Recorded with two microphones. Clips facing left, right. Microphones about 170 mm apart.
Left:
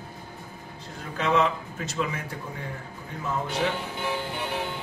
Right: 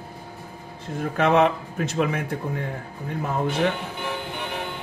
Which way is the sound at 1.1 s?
60° right (ahead or behind).